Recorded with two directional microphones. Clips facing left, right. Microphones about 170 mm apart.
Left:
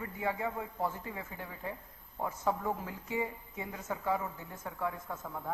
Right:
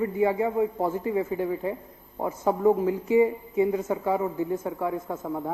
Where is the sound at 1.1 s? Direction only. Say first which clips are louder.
Right 17 dB; 15° right (ahead or behind).